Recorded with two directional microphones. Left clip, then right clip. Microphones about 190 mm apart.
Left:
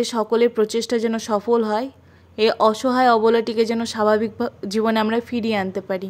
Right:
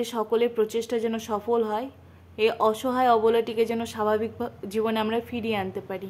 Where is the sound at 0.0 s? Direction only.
30° left (ahead or behind).